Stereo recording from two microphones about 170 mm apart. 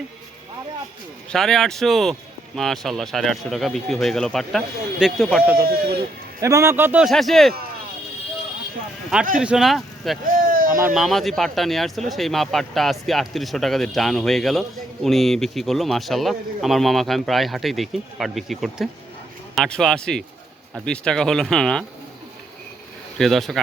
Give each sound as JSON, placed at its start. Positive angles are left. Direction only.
{"t": 1.3, "sound": "a man's voice", "side_deg": 5}
{"t": 5.5, "sound": "speech", "side_deg": -60}
{"t": 6.4, "sound": "a man's voice", "side_deg": -15}
{"t": 7.1, "sound": "a man's voice", "side_deg": 0}
{"t": 9.4, "sound": "speech", "side_deg": -5}
{"t": 10.2, "sound": "a sound", "side_deg": -55}
{"t": 10.9, "sound": "a man's voice", "side_deg": 0}
{"t": 23.1, "sound": "a man's voice", "side_deg": 0}